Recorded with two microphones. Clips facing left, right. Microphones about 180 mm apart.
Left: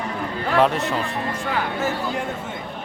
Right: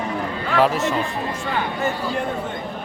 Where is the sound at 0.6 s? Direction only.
Centre (ahead or behind).